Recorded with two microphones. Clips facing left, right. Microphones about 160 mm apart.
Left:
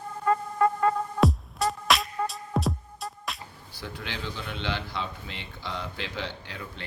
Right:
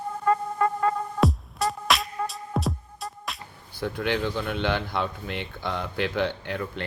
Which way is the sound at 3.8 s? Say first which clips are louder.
Right 10 dB; 55° right (ahead or behind).